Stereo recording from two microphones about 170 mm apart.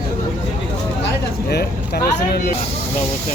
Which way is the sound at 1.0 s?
70° left (ahead or behind).